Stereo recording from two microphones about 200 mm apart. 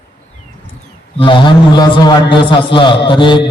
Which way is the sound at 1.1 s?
25° left (ahead or behind).